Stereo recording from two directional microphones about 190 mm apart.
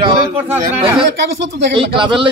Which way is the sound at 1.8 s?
25° right (ahead or behind).